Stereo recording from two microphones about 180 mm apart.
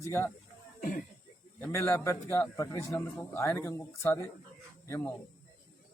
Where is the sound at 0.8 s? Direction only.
50° left (ahead or behind).